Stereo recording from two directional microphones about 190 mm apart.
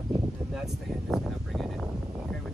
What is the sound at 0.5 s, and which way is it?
Speech, centre (ahead or behind).